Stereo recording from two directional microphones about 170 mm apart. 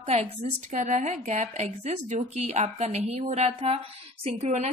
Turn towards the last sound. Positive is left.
turn(degrees=-40)  # may be behind; listen again after turning